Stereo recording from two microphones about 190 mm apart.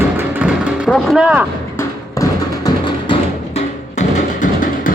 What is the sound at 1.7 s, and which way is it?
Music, 15° left (ahead or behind).